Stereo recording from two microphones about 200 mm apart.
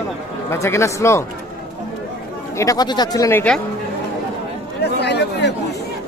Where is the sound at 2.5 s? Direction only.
15° left (ahead or behind).